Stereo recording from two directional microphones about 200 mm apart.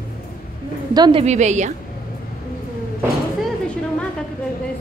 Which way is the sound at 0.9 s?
20° right (ahead or behind).